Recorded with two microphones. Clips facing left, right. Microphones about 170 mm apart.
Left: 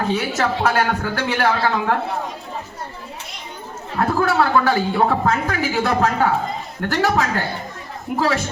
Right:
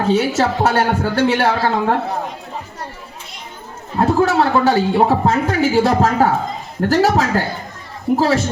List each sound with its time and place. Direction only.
0.3 s speech: 30° right (ahead or behind)
3.9 s speech: 25° right (ahead or behind)